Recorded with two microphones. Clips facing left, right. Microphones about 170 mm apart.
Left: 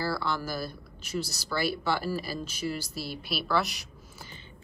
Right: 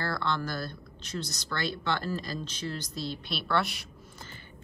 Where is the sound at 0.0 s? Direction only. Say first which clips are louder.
Left 1 dB; 5° left (ahead or behind).